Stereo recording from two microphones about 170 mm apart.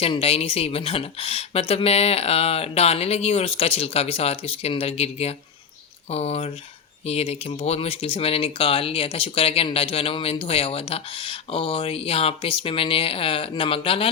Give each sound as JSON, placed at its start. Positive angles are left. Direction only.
{"t": 0.0, "sound": "speech", "side_deg": 35}